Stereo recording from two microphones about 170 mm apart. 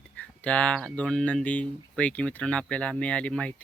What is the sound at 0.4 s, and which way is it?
Speech, 5° left (ahead or behind).